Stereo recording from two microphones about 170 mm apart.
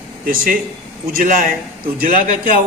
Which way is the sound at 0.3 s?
55° right (ahead or behind).